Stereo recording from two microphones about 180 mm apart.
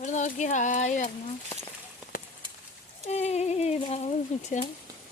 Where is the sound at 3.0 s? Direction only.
35° left (ahead or behind).